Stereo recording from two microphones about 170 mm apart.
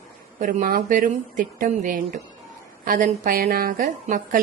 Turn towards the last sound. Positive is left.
turn(degrees=-50)  # may be behind; listen again after turning